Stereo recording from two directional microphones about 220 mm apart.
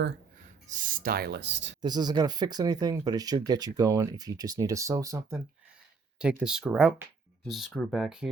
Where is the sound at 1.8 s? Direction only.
20° right (ahead or behind).